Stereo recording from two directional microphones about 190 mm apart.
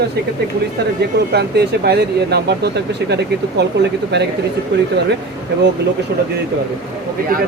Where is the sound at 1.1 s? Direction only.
60° right (ahead or behind).